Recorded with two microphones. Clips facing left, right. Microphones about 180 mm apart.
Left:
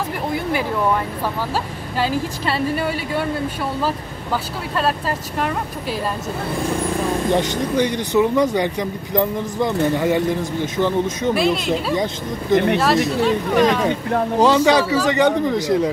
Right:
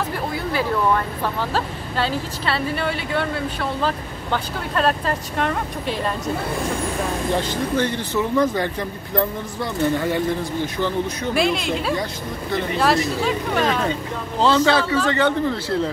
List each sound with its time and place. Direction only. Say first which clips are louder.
0.5 s speech: right 1 dB; 15° left (ahead or behind)
7.3 s speech: left 3 dB; 15° left (ahead or behind)
11.3 s speech: right 1 dB; centre (ahead or behind)
11.9 s speech: left 3 dB; 20° left (ahead or behind)
12.7 s speech: left 2 dB; centre (ahead or behind)
14.4 s speech: left 2 dB; 15° left (ahead or behind)